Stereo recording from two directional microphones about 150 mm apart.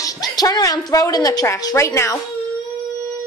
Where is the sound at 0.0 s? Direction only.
25° left (ahead or behind).